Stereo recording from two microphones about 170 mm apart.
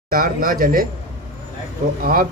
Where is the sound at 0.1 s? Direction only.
55° right (ahead or behind).